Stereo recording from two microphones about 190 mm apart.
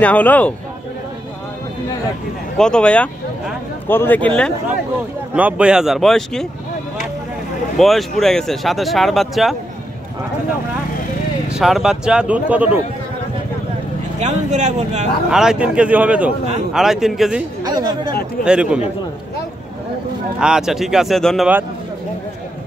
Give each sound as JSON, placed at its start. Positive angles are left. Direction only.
{"t": 0.0, "sound": "a man's voice", "side_deg": 10}
{"t": 2.5, "sound": "speech", "side_deg": 5}
{"t": 5.3, "sound": "speech", "side_deg": -5}
{"t": 7.7, "sound": "speech", "side_deg": 0}
{"t": 11.5, "sound": "speech", "side_deg": 0}
{"t": 14.2, "sound": "speech", "side_deg": -40}
{"t": 15.2, "sound": "speech", "side_deg": -5}
{"t": 17.6, "sound": "speech", "side_deg": -20}
{"t": 18.4, "sound": "speech", "side_deg": -5}
{"t": 20.3, "sound": "speech", "side_deg": -5}